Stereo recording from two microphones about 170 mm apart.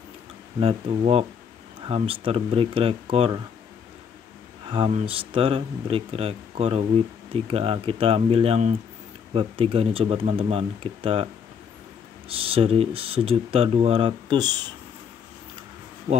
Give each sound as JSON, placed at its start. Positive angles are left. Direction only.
{"t": 0.6, "sound": "speech", "side_deg": -35}
{"t": 4.6, "sound": "speech", "side_deg": -30}
{"t": 12.3, "sound": "speech", "side_deg": -35}